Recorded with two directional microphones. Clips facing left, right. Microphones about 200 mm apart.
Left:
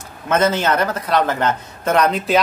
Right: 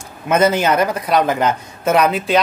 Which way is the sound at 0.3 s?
10° right (ahead or behind).